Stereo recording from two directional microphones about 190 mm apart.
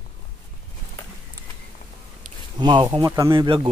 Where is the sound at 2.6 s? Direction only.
20° right (ahead or behind).